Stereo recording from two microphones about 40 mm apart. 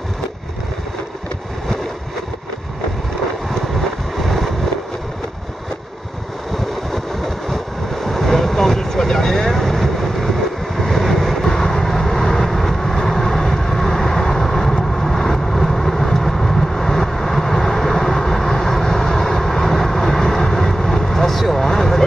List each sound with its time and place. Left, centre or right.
4.2 s vehicle: centre
7.4 s vehicle: centre